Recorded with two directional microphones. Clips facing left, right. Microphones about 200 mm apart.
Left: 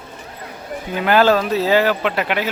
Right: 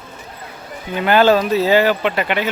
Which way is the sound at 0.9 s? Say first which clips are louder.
Right 1 dB; centre (ahead or behind).